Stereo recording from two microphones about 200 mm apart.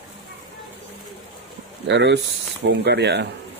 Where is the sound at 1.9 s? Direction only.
60° right (ahead or behind).